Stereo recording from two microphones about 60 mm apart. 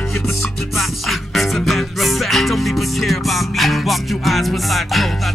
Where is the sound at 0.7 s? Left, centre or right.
Centre.